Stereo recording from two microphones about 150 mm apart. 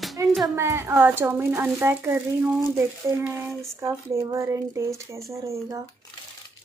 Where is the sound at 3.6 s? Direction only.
20° right (ahead or behind).